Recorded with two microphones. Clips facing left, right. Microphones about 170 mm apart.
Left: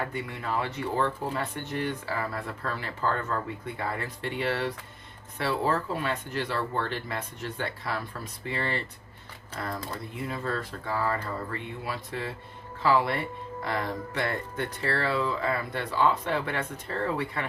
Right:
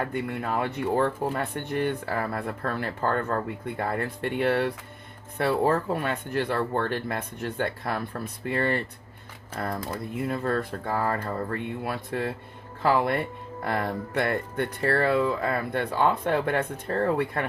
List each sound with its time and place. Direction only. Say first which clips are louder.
0.1 s speech: right 4 dB; 55° right (ahead or behind)